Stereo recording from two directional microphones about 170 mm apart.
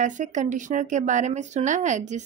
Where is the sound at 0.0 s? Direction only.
45° right (ahead or behind).